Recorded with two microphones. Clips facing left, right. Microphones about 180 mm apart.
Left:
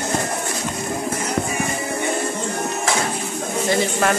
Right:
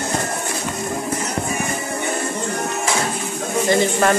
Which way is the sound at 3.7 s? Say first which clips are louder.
Right 3 dB; centre (ahead or behind).